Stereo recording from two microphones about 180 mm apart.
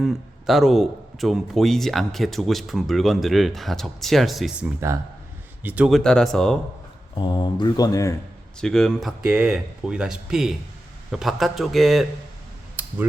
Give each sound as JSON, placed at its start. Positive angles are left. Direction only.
{"t": 0.0, "sound": "a man's voice", "side_deg": 0}
{"t": 4.8, "sound": "a man's voice", "side_deg": -15}
{"t": 7.2, "sound": "speech", "side_deg": 25}
{"t": 8.6, "sound": "a man's voice", "side_deg": 5}
{"t": 12.8, "sound": "a sound", "side_deg": -10}